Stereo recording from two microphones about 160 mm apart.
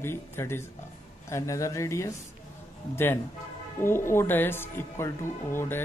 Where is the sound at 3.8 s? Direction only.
15° left (ahead or behind).